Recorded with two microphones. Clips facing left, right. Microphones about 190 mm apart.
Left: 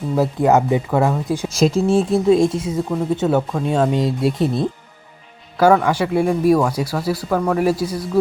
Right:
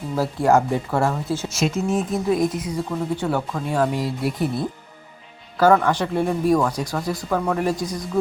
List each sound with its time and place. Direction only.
0.2 s speech: 20° left (ahead or behind)
1.5 s speech: 35° left (ahead or behind)
5.5 s speech: 10° left (ahead or behind)